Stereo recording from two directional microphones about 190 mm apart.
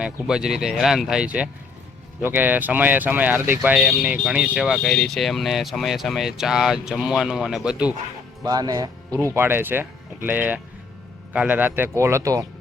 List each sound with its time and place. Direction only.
0.0 s speech: 5° right (ahead or behind)
8.4 s speech: 20° right (ahead or behind)